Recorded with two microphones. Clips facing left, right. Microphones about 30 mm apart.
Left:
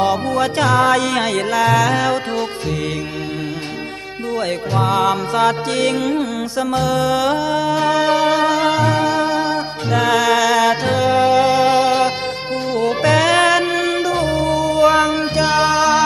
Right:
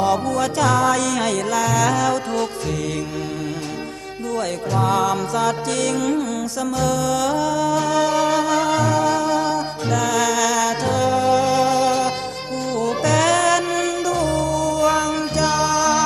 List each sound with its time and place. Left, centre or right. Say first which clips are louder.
0.0 s music: left 2 dB; left
4.7 s music: left 2 dB; left